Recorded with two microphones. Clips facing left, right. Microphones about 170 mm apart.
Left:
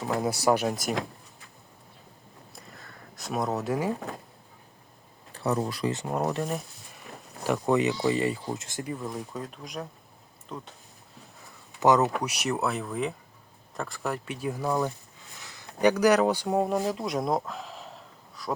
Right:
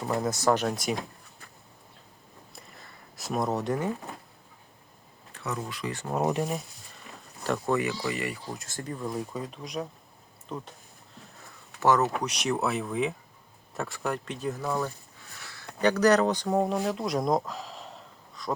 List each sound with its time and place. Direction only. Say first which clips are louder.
0.2 s speech: left 1 dB; 10° left (ahead or behind)
2.6 s a sound: left 3 dB; centre (ahead or behind)
5.3 s speech: left 7 dB; 35° left (ahead or behind)
6.2 s speech: right 3 dB; 15° right (ahead or behind)
7.4 s speech: left 3 dB; 15° left (ahead or behind)
11.8 s speech: left 2 dB; 15° left (ahead or behind); by 18.5 s centre (ahead or behind)